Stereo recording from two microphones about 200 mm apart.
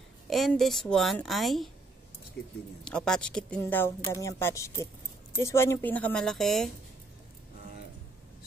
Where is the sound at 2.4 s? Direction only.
55° left (ahead or behind).